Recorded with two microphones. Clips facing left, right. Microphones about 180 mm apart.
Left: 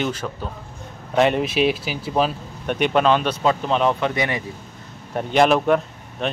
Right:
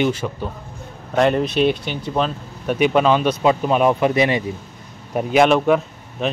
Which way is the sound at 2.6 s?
5° right (ahead or behind).